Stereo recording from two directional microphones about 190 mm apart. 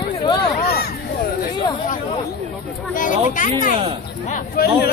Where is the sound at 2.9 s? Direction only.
45° left (ahead or behind).